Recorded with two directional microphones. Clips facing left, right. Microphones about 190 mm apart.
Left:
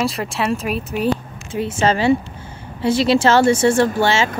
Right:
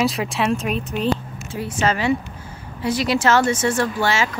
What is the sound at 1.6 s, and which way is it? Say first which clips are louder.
Speech: left 4 dB; 25° left (ahead or behind).